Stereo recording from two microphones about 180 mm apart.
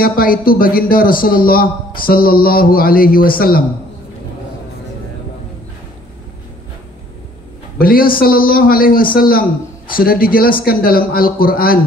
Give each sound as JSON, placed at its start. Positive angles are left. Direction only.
{"t": 0.0, "sound": "a man's voice", "side_deg": 55}
{"t": 7.8, "sound": "a man's voice", "side_deg": 55}